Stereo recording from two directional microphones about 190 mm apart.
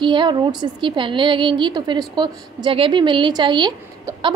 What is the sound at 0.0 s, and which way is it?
A woman's voice, 25° right (ahead or behind).